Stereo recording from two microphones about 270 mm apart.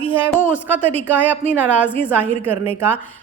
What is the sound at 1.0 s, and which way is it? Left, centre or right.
Speech, centre.